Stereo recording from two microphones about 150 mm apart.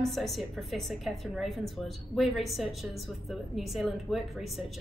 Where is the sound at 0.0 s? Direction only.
Centre (ahead or behind).